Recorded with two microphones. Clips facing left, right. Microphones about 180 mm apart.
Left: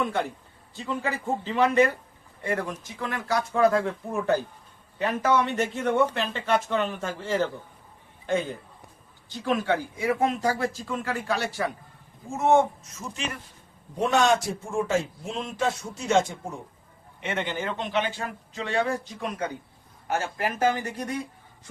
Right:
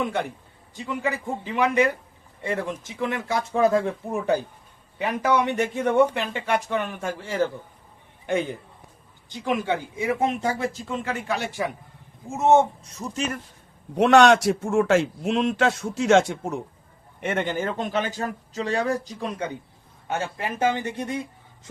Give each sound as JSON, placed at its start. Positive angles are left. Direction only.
{"t": 0.8, "sound": "speech", "side_deg": -15}
{"t": 12.9, "sound": "speech", "side_deg": -40}
{"t": 13.9, "sound": "a man's voice", "side_deg": -75}
{"t": 17.2, "sound": "a man's voice", "side_deg": -50}